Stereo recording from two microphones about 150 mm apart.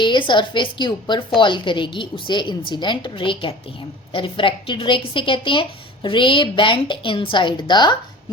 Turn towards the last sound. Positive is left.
turn(degrees=30)  # may be behind; listen again after turning